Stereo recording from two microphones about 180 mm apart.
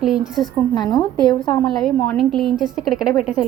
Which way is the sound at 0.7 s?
25° left (ahead or behind).